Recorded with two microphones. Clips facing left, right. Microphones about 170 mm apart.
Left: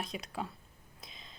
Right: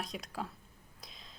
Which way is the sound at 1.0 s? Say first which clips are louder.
Left 1 dB; centre (ahead or behind).